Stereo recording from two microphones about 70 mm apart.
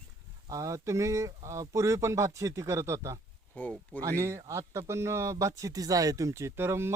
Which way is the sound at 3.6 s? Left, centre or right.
Left.